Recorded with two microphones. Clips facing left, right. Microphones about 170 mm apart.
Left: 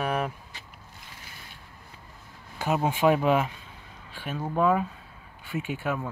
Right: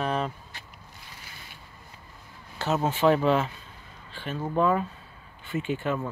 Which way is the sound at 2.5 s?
10° left (ahead or behind).